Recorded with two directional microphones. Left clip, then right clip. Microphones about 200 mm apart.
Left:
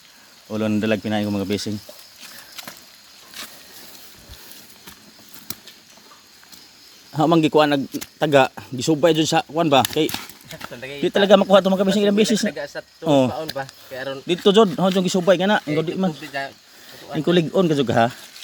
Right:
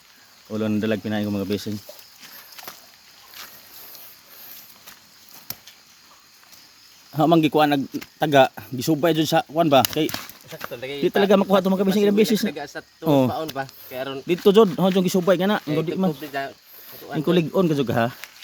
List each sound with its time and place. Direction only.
0.5 s speech: centre (ahead or behind)
7.1 s speech: 10° right (ahead or behind)
10.7 s speech: 45° right (ahead or behind)
11.0 s speech: 15° right (ahead or behind)
12.5 s speech: 40° right (ahead or behind)
13.1 s speech: 20° right (ahead or behind)
13.3 s speech: 45° right (ahead or behind)
14.4 s speech: 15° right (ahead or behind)